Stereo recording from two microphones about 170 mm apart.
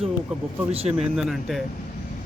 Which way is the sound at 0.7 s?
35° right (ahead or behind).